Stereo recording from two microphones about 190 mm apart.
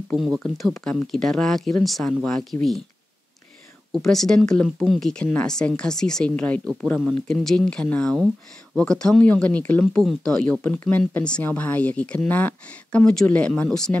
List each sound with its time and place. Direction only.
0.4 s speech: centre (ahead or behind)
4.0 s speech: centre (ahead or behind)